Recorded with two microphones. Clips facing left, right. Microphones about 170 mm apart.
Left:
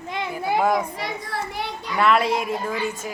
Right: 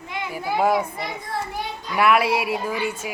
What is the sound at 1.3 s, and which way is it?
Speech, 75° left (ahead or behind).